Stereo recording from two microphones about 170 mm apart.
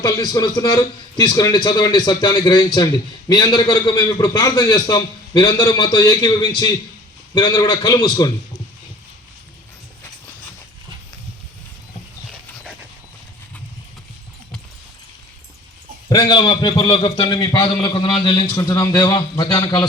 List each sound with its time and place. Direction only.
0.0 s a man's voice: 20° left (ahead or behind)
16.0 s a man's voice: 25° left (ahead or behind)